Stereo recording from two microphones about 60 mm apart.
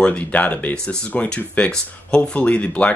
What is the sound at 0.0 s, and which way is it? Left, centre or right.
Speech, left.